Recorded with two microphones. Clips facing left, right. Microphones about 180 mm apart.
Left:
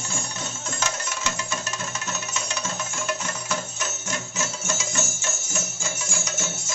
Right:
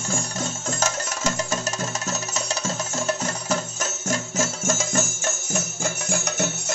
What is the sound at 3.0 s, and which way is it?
Music, 40° right (ahead or behind).